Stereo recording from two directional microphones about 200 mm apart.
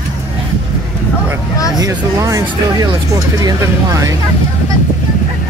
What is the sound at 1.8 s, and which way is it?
Speech, 15° right (ahead or behind).